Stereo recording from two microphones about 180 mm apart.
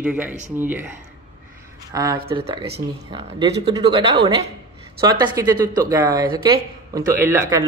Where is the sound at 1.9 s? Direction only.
20° right (ahead or behind).